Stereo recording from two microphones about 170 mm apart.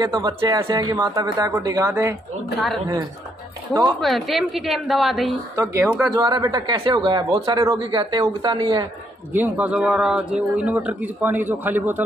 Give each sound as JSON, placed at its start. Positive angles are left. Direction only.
{"t": 0.0, "sound": "a man's voice", "side_deg": -25}
{"t": 4.0, "sound": "a woman's voice", "side_deg": 0}
{"t": 5.6, "sound": "a man's voice", "side_deg": -15}
{"t": 6.1, "sound": "speech", "side_deg": -25}
{"t": 9.3, "sound": "a man's voice", "side_deg": -10}